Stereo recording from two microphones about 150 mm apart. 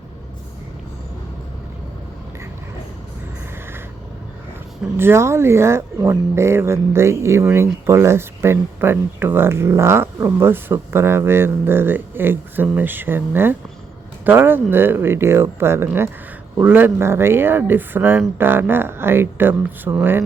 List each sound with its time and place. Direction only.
4.9 s speech: 15° right (ahead or behind)